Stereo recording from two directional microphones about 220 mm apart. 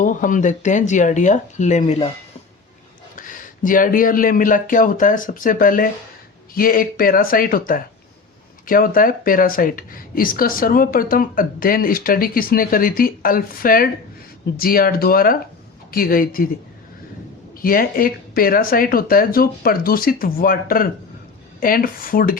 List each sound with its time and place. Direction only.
0.0 s speech: 35° left (ahead or behind)
3.2 s speech: 35° left (ahead or behind)
17.6 s speech: 40° left (ahead or behind)